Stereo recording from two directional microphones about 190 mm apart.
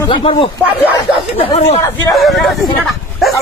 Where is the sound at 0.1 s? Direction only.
30° left (ahead or behind).